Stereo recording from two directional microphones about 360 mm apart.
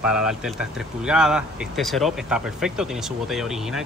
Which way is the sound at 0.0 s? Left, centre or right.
Centre.